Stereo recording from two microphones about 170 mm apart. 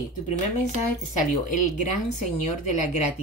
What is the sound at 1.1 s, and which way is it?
Speech, 50° left (ahead or behind).